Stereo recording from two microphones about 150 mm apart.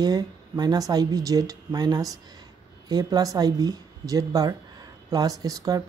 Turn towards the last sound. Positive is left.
turn(degrees=-25)  # may be behind; listen again after turning